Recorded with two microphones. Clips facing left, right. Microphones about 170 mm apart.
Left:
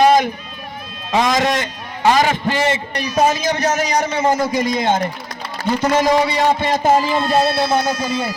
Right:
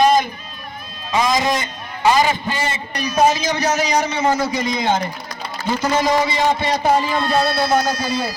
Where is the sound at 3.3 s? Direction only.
50° left (ahead or behind).